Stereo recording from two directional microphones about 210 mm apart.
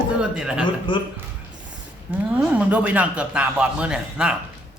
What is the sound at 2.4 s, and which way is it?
A man's voice, 5° right (ahead or behind).